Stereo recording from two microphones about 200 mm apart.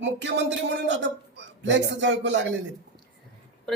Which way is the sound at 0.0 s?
65° right (ahead or behind).